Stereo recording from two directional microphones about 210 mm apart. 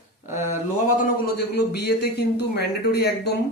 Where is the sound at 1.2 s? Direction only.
50° left (ahead or behind).